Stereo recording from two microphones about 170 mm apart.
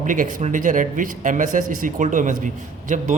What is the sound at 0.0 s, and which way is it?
A man's voice, 50° right (ahead or behind).